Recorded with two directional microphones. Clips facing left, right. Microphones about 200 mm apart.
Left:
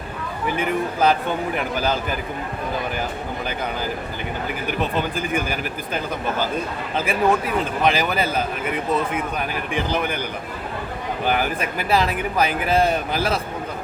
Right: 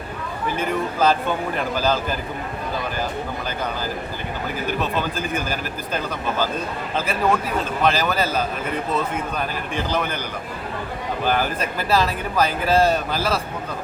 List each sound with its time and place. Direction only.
0.5 s speech: 15° left (ahead or behind)
5.1 s speech: 15° left (ahead or behind)
9.7 s speech: 15° left (ahead or behind)
11.3 s speech: 15° left (ahead or behind)